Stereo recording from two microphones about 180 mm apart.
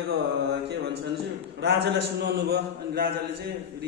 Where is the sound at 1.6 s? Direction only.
70° right (ahead or behind).